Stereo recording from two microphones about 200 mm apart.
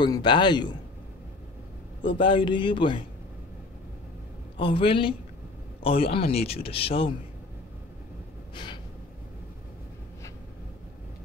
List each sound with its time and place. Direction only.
0.0 s a man's voice: 20° left (ahead or behind)
2.0 s a man's voice: 25° left (ahead or behind)
4.6 s a man's voice: 25° left (ahead or behind)